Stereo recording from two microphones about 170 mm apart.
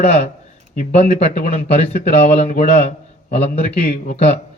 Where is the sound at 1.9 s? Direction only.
40° left (ahead or behind).